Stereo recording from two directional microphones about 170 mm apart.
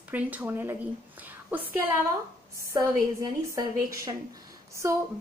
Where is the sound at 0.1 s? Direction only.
10° right (ahead or behind).